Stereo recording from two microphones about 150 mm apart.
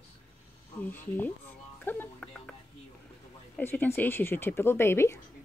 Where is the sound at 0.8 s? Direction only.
10° left (ahead or behind).